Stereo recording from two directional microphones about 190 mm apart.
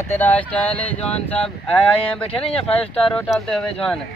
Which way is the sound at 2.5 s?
5° left (ahead or behind).